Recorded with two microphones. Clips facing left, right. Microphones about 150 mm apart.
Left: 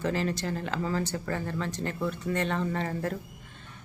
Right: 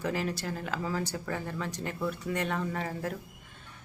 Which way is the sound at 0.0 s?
10° right (ahead or behind).